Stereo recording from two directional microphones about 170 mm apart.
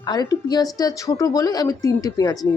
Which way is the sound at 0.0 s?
25° left (ahead or behind).